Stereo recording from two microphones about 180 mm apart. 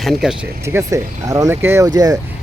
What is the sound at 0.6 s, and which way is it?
Speech, 15° right (ahead or behind).